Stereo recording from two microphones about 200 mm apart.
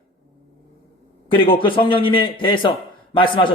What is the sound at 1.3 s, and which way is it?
A man's voice, 25° left (ahead or behind).